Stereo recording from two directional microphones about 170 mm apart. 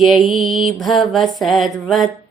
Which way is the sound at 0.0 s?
Centre (ahead or behind).